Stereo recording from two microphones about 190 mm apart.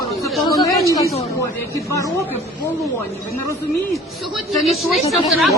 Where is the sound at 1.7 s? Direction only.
15° left (ahead or behind).